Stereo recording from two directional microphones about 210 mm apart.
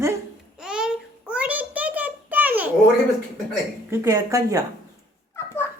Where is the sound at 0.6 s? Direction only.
5° right (ahead or behind).